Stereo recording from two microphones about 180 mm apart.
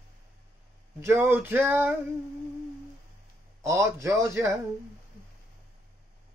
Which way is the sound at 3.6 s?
15° right (ahead or behind).